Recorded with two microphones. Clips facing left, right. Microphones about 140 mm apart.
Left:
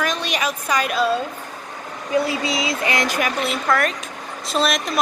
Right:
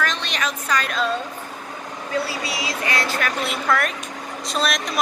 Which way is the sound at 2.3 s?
20° left (ahead or behind).